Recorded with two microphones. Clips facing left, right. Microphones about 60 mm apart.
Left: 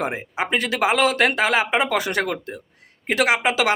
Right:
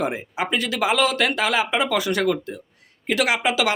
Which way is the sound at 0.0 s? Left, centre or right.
Left.